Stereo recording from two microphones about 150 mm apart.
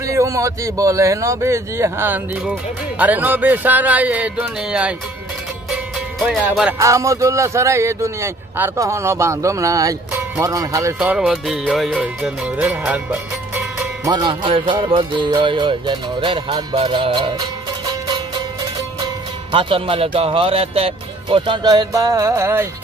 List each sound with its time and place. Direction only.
0.0 s a man's voice: 20° right (ahead or behind)
5.7 s music: centre (ahead or behind)
6.8 s speech: 20° right (ahead or behind)
11.0 s a man's voice: 10° right (ahead or behind)
14.0 s music: 30° right (ahead or behind)
18.9 s speech: 30° right (ahead or behind)